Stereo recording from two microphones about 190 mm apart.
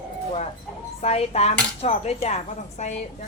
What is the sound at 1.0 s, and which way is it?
Speech, 35° left (ahead or behind).